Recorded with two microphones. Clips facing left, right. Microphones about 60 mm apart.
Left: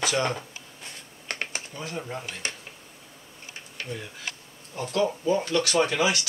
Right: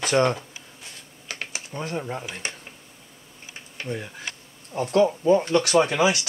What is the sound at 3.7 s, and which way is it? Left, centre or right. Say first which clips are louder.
Speech: right 4 dB; centre.